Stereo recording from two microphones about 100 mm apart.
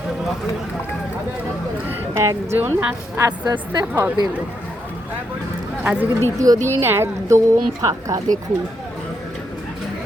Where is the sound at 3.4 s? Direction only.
45° right (ahead or behind).